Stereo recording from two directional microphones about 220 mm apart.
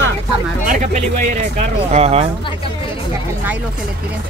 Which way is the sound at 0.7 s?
30° right (ahead or behind).